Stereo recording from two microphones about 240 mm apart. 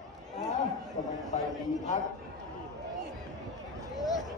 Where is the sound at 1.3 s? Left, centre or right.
Left.